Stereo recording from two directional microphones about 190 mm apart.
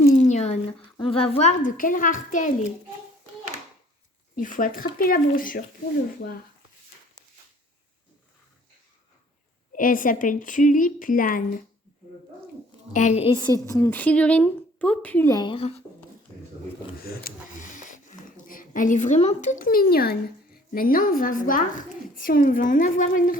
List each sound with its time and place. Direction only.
0.1 s a sound: 40° left (ahead or behind)
0.9 s a woman's voice: 30° left (ahead or behind)
4.4 s a woman's voice: 45° left (ahead or behind)
9.7 s a woman's voice: 45° left (ahead or behind)
12.9 s a woman's voice: 40° left (ahead or behind)
17.1 s a woman's voice: 50° left (ahead or behind)